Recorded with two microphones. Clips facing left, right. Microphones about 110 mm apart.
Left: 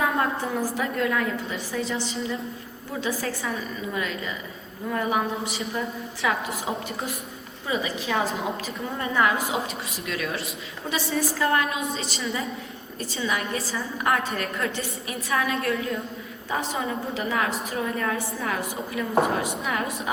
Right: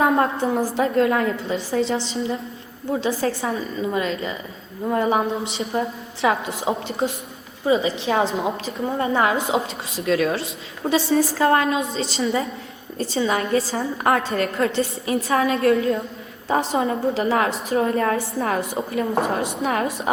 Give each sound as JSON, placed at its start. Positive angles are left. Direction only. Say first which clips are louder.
{"t": 0.0, "sound": "a woman's voice", "louder": "right 6 dB", "side_deg": -30}